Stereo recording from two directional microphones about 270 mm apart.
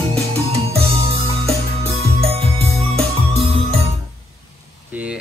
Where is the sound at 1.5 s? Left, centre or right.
Right.